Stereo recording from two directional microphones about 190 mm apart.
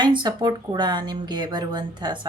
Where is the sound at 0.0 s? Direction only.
25° right (ahead or behind).